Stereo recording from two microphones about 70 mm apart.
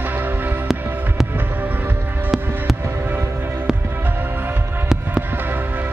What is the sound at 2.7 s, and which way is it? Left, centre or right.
Fireworks, right.